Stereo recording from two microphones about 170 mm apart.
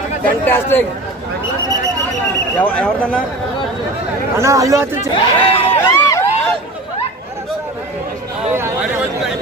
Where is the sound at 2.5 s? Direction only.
5° left (ahead or behind).